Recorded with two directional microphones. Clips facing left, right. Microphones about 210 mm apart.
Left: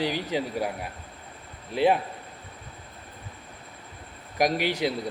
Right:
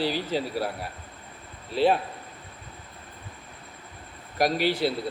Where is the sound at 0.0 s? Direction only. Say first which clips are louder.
Even; 15° left (ahead or behind).